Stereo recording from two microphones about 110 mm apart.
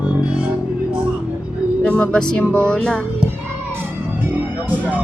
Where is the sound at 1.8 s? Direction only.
10° left (ahead or behind).